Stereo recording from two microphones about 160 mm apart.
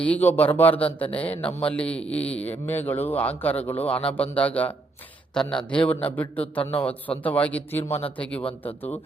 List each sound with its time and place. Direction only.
0.0 s a man's voice: 10° left (ahead or behind)
6.6 s a man's voice: 35° left (ahead or behind)
6.8 s a man's voice: 10° left (ahead or behind)